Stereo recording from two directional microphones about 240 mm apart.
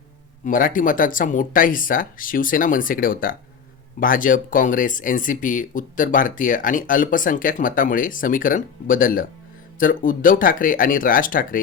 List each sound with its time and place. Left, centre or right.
0.4 s speech: left